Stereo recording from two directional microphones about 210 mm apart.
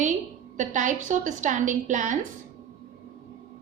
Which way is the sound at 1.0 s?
35° right (ahead or behind).